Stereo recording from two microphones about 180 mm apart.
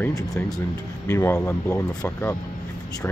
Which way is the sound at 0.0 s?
15° left (ahead or behind).